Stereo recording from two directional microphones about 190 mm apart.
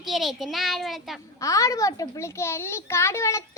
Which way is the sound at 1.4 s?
15° left (ahead or behind).